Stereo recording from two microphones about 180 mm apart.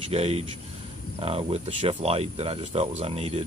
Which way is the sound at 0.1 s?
35° right (ahead or behind).